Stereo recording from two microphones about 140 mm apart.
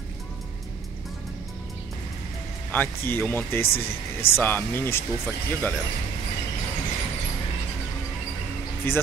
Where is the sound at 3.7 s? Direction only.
45° left (ahead or behind).